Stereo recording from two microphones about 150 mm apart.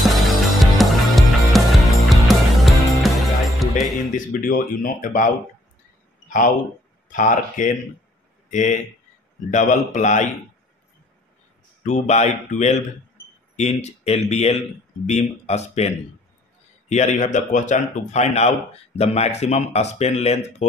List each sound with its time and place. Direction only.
0.1 s music: centre (ahead or behind)
4.1 s speech: 65° left (ahead or behind)
6.2 s a sound: 60° left (ahead or behind)
7.1 s a man's voice: 60° left (ahead or behind)
11.8 s a man's voice: 50° left (ahead or behind)
16.9 s a man's voice: 55° left (ahead or behind)